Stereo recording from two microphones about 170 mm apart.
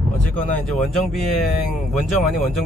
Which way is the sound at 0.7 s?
Centre (ahead or behind).